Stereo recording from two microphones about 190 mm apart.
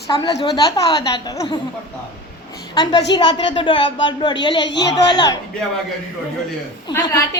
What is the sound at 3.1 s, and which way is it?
A woman's voice, 25° left (ahead or behind).